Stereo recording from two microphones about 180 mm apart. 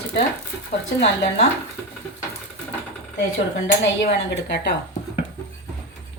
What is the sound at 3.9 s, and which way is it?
Speech, 75° left (ahead or behind).